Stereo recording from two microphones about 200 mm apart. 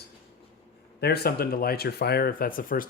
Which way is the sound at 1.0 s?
50° left (ahead or behind).